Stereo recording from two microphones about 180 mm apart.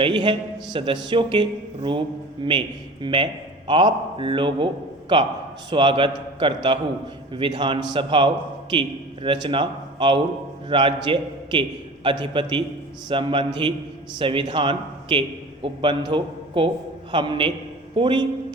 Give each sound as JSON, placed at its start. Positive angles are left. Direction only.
{"t": 0.0, "sound": "a man's voice", "side_deg": -25}